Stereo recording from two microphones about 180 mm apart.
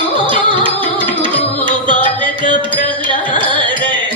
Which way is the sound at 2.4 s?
45° left (ahead or behind).